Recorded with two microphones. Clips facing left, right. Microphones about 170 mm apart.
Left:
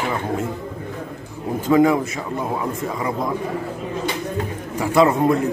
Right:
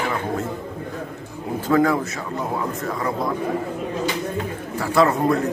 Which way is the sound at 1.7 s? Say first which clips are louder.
Left 3 dB; 20° left (ahead or behind).